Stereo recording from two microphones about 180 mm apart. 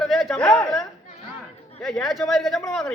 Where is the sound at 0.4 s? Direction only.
20° left (ahead or behind).